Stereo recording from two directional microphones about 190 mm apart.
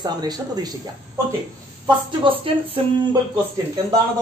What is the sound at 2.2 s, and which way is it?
Speech, 25° right (ahead or behind).